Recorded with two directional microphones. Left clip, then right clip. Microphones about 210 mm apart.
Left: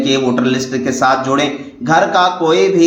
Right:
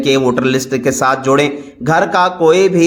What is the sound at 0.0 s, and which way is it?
A man's voice, 50° right (ahead or behind).